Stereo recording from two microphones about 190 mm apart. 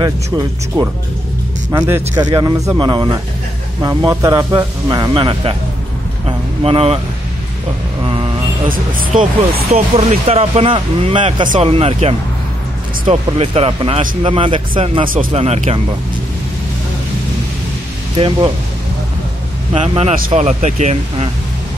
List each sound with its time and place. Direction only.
0.0 s speech: 20° right (ahead or behind)
6.2 s a sound: 30° right (ahead or behind)
8.6 s speech: 45° right (ahead or behind)
9.7 s speech: 35° right (ahead or behind)
18.1 s speech: 25° right (ahead or behind)
19.7 s speech: 30° right (ahead or behind)